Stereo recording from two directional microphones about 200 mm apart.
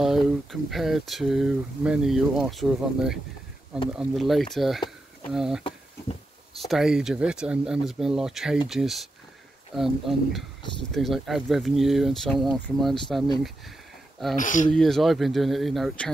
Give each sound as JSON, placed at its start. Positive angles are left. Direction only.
{"t": 0.0, "sound": "speech", "side_deg": 0}
{"t": 5.6, "sound": "a sound", "side_deg": 25}
{"t": 6.6, "sound": "speech", "side_deg": 0}
{"t": 14.3, "sound": "speech", "side_deg": 40}
{"t": 14.7, "sound": "speech", "side_deg": 0}